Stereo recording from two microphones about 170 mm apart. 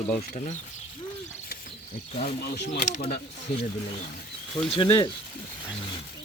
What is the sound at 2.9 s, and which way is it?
Speech, 40° left (ahead or behind).